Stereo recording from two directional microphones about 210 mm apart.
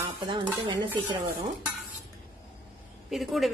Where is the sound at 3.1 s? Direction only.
Centre (ahead or behind).